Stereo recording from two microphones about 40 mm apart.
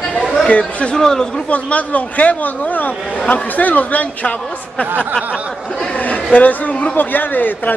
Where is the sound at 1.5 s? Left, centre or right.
Left.